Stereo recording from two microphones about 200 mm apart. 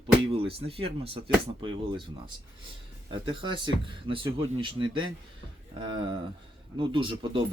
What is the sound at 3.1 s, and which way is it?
Speech, 25° right (ahead or behind).